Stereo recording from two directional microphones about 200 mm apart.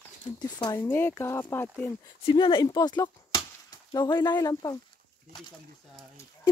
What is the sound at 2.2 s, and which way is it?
Speech, 25° left (ahead or behind).